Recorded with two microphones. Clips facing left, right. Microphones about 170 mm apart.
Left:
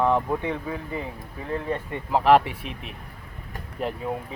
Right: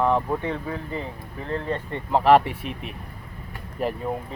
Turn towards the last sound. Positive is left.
turn(degrees=0)  # may be behind; listen again after turning